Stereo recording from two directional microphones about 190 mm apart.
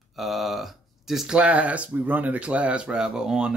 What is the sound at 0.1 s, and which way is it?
Speech, centre (ahead or behind).